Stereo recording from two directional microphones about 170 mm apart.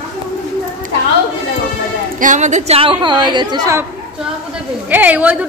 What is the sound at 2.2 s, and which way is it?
A woman's voice, 45° right (ahead or behind).